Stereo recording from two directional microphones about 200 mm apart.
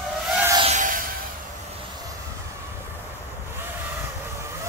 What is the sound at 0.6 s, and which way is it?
Music, 35° right (ahead or behind).